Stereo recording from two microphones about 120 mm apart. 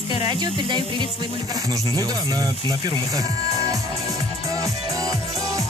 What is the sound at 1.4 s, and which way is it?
Speech, 30° right (ahead or behind).